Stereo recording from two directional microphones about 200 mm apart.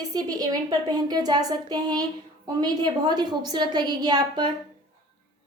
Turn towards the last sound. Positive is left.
turn(degrees=-20)  # may be behind; listen again after turning